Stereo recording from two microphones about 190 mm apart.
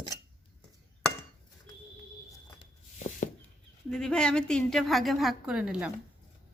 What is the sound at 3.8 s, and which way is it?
A woman's voice, 5° left (ahead or behind).